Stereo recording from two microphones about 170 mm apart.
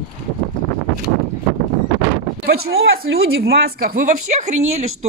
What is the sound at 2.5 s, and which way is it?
Speech, 70° right (ahead or behind).